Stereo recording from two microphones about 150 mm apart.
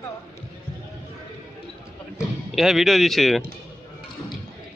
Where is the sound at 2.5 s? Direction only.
Centre (ahead or behind).